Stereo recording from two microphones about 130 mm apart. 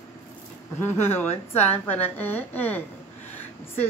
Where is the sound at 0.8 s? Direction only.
20° left (ahead or behind).